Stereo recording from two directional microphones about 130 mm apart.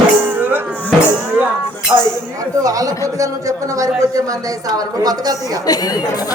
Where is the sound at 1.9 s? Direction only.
15° right (ahead or behind).